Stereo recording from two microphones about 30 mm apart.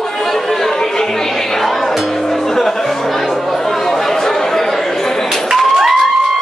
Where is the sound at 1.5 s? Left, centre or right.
Centre.